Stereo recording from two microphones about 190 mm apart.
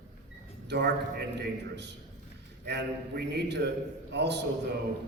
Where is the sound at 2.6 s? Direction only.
60° right (ahead or behind).